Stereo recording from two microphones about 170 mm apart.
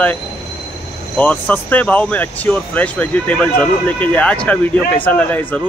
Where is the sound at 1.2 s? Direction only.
10° left (ahead or behind).